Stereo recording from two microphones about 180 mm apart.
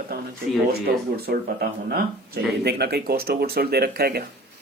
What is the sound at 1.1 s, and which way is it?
Speech, 60° right (ahead or behind).